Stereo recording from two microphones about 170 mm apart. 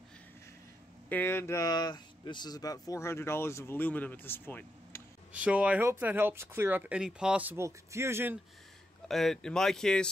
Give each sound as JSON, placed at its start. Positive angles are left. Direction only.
{"t": 1.0, "sound": "speech", "side_deg": 10}
{"t": 5.3, "sound": "speech", "side_deg": -10}
{"t": 9.0, "sound": "speech", "side_deg": 0}